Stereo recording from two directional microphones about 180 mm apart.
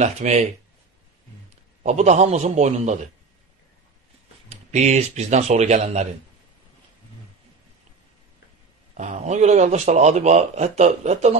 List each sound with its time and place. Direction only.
0.0 s a man's voice: 40° right (ahead or behind)
1.8 s a man's voice: 40° right (ahead or behind)
4.5 s a man's voice: 40° right (ahead or behind)
8.9 s a man's voice: 40° right (ahead or behind)